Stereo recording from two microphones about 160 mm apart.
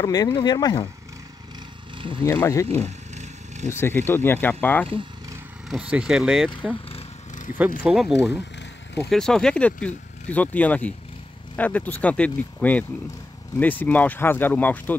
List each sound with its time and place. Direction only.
0.0 s speech: 25° left (ahead or behind)
2.0 s a sound: 30° right (ahead or behind)
2.2 s speech: 15° left (ahead or behind)
2.7 s vehicle: 45° right (ahead or behind)
3.7 s speech: 15° left (ahead or behind)
5.7 s speech: 5° right (ahead or behind)
7.8 s speech: 5° right (ahead or behind)
9.1 s speech: 5° left (ahead or behind)